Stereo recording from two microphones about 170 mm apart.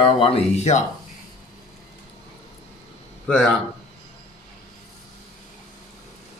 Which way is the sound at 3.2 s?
5° left (ahead or behind).